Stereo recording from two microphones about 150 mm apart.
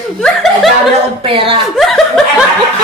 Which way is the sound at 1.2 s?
35° right (ahead or behind).